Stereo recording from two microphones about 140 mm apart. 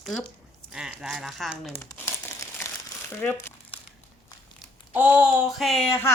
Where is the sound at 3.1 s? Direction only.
15° left (ahead or behind).